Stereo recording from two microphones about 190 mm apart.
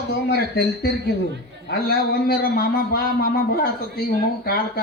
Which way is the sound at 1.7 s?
55° left (ahead or behind).